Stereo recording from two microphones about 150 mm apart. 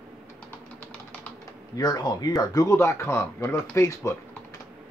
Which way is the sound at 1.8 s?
30° left (ahead or behind).